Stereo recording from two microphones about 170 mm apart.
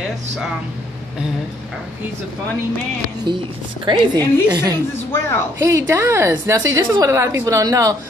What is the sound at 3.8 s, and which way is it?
Speech, 25° right (ahead or behind).